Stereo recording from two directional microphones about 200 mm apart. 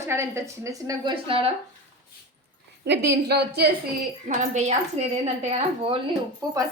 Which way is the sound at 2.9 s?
55° right (ahead or behind).